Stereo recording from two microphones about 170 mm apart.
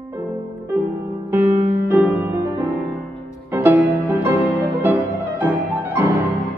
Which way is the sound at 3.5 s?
15° right (ahead or behind).